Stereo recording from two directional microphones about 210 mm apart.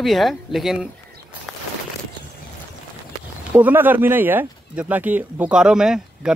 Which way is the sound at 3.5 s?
10° right (ahead or behind).